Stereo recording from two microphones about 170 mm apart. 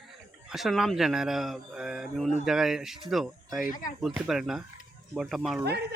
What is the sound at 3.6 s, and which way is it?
Speech, 50° left (ahead or behind).